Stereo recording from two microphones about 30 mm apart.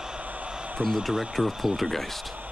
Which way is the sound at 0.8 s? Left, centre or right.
Right.